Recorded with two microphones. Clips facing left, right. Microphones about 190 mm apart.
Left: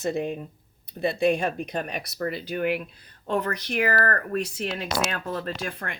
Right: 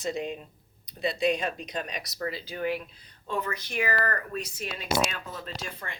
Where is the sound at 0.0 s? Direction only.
55° left (ahead or behind).